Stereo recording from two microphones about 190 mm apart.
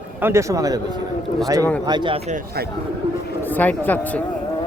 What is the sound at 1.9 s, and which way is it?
Speech, 25° right (ahead or behind).